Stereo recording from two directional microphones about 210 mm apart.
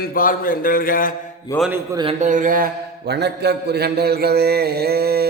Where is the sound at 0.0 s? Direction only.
45° left (ahead or behind).